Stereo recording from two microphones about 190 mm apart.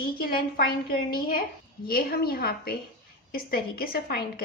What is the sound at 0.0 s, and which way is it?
A woman's voice, 50° left (ahead or behind).